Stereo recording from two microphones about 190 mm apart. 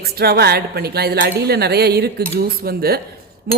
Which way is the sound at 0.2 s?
55° right (ahead or behind).